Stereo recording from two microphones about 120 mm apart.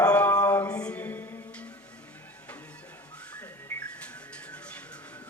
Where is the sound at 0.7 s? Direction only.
10° left (ahead or behind).